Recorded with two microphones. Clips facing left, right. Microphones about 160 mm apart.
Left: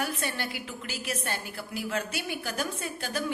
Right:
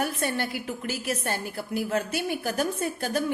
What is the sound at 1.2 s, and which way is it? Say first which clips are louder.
Speech: right 4 dB; 25° right (ahead or behind).